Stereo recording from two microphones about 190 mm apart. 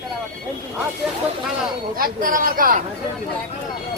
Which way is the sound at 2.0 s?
45° right (ahead or behind).